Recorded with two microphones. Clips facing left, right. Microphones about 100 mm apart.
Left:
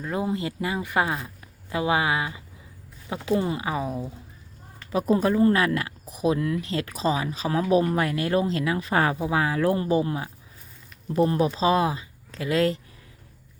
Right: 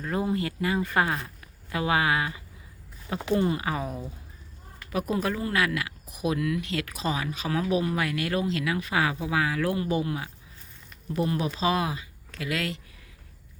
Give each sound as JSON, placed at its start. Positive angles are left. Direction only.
{"t": 0.0, "sound": "speech", "side_deg": 15}
{"t": 4.9, "sound": "speech", "side_deg": 30}